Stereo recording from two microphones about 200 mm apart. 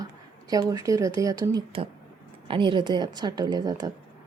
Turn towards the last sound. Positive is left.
turn(degrees=-20)  # may be behind; listen again after turning